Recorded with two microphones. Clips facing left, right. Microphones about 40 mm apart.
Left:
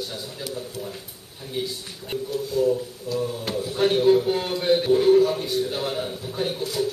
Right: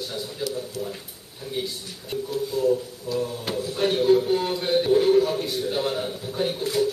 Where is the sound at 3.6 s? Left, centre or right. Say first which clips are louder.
Left 2 dB; left.